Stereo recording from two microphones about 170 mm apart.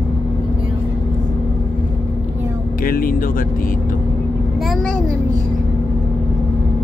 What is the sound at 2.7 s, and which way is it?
Speech, 55° left (ahead or behind).